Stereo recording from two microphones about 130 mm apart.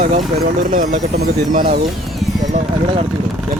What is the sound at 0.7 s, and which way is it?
Speech, 75° right (ahead or behind).